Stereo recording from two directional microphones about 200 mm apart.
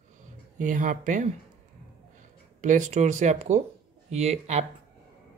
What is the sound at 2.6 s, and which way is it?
Speech, 35° right (ahead or behind).